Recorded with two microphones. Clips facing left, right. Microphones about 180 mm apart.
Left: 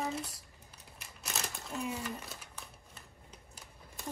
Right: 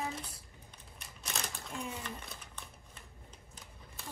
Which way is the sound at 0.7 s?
5° left (ahead or behind).